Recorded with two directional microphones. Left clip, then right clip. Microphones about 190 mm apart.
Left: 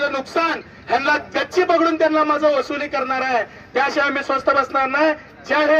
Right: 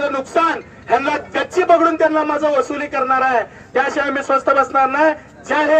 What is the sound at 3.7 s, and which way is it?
A man's voice, 30° left (ahead or behind).